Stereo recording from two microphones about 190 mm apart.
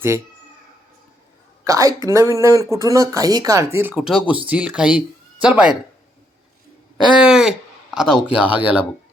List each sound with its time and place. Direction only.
1.6 s speech: 15° right (ahead or behind)
7.2 s speech: 5° right (ahead or behind)